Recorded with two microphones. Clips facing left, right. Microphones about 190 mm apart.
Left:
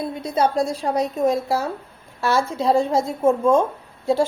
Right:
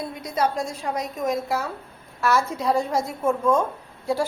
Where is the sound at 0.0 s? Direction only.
25° left (ahead or behind).